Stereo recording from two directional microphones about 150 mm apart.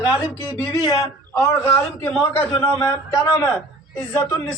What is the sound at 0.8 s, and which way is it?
A man's voice, 25° left (ahead or behind).